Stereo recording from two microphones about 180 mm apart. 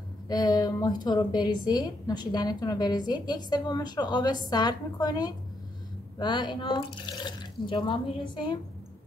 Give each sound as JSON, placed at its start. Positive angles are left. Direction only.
{"t": 0.3, "sound": "a woman's voice", "side_deg": 20}